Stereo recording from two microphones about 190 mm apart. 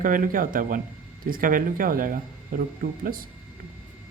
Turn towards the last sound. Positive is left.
turn(degrees=-50)  # may be behind; listen again after turning